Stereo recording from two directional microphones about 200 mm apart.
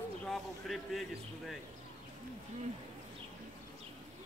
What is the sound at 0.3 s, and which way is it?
Speech, centre (ahead or behind).